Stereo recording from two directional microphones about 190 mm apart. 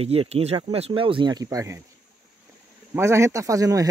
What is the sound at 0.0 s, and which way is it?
Speech, 30° right (ahead or behind).